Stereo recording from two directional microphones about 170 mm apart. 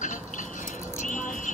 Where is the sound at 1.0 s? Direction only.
50° left (ahead or behind).